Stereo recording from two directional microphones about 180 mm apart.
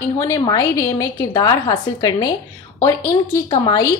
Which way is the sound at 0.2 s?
20° left (ahead or behind).